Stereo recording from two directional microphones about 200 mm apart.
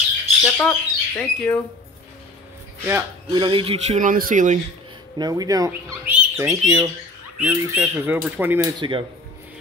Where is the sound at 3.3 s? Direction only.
25° right (ahead or behind); by 4.5 s 40° right (ahead or behind).